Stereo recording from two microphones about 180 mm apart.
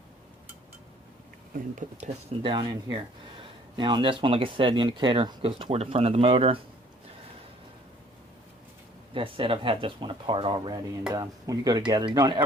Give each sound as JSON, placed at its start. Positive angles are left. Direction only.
{"t": 1.8, "sound": "speech", "side_deg": -40}
{"t": 2.4, "sound": "speech", "side_deg": -25}
{"t": 9.1, "sound": "speech", "side_deg": -30}